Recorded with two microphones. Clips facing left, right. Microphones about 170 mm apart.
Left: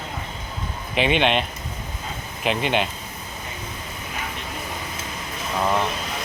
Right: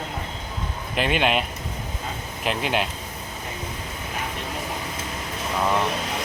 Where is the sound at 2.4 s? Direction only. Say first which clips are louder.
Left 2 dB; centre (ahead or behind).